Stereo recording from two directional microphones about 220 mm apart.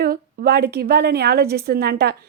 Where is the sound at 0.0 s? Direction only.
45° right (ahead or behind).